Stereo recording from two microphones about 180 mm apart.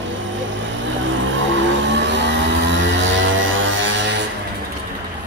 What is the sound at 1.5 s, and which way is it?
Vehicle, 85° right.